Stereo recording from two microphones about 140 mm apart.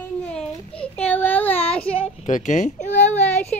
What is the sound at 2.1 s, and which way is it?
Speech, 60° left (ahead or behind).